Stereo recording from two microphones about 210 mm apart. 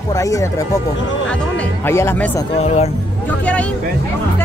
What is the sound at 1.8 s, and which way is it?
Speech, 10° left (ahead or behind).